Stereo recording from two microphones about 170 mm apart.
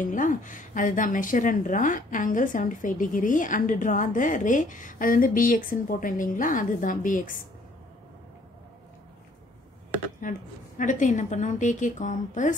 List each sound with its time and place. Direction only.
0.0 s speech: 50° left (ahead or behind)
10.2 s speech: 50° left (ahead or behind)